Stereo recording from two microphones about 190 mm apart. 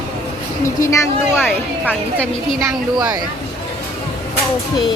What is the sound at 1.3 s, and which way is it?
Speech, 5° right (ahead or behind).